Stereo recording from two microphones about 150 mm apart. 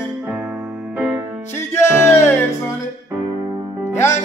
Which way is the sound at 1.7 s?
15° left (ahead or behind).